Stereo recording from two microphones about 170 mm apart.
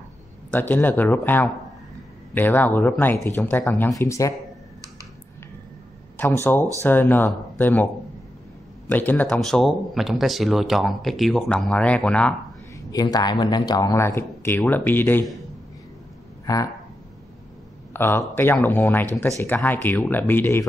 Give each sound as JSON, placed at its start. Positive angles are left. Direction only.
{"t": 0.5, "sound": "speech", "side_deg": 10}
{"t": 6.1, "sound": "speech", "side_deg": 15}
{"t": 12.9, "sound": "speech", "side_deg": 25}
{"t": 16.5, "sound": "speech", "side_deg": 20}
{"t": 17.9, "sound": "speech", "side_deg": 10}